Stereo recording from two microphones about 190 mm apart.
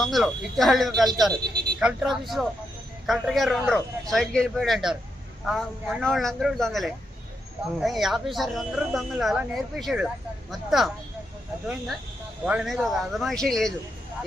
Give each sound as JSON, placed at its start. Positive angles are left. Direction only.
{"t": 0.0, "sound": "speech", "side_deg": 0}
{"t": 1.3, "sound": "speech", "side_deg": -55}
{"t": 1.8, "sound": "speech", "side_deg": 0}
{"t": 12.5, "sound": "speech", "side_deg": -5}